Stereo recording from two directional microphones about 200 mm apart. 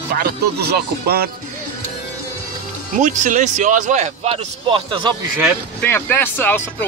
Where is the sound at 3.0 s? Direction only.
40° right (ahead or behind).